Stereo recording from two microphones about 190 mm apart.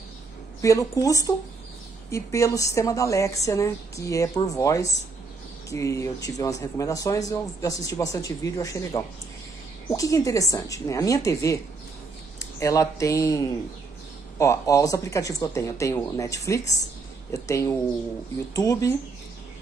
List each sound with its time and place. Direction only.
0.6 s a woman's voice: 15° left (ahead or behind)